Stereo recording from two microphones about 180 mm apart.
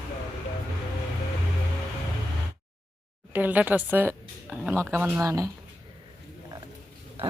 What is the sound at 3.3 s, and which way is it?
Speech, 10° right (ahead or behind).